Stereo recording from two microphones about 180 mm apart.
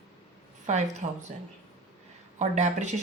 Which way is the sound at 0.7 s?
40° right (ahead or behind).